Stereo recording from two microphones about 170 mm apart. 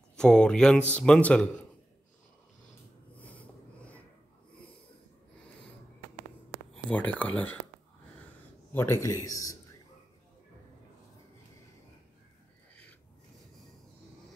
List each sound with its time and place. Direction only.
0.1 s mantra: 5° left (ahead or behind)
0.9 s speech: 5° left (ahead or behind)
3.3 s wheeze: 10° left (ahead or behind)
6.7 s speech: 10° left (ahead or behind)
8.7 s a man's voice: 15° left (ahead or behind)